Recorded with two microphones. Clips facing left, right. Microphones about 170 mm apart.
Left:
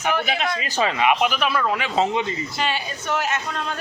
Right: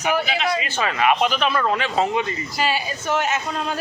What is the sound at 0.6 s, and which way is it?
Speech, 25° left (ahead or behind).